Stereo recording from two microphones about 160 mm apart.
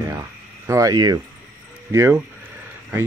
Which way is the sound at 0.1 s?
20° right (ahead or behind).